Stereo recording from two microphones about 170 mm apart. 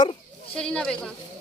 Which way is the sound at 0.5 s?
5° left (ahead or behind).